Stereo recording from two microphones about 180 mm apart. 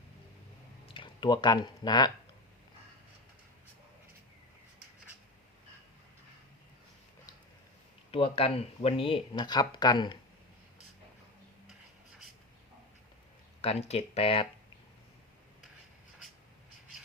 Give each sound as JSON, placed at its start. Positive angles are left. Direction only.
{"t": 0.9, "sound": "speech", "side_deg": 25}
{"t": 8.1, "sound": "speech", "side_deg": 30}
{"t": 13.6, "sound": "speech", "side_deg": 35}